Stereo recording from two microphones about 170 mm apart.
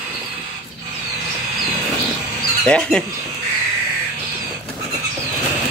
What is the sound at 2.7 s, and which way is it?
Speech, 5° left (ahead or behind).